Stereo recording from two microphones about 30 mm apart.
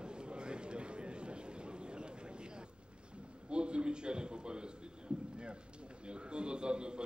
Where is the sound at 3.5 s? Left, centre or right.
Right.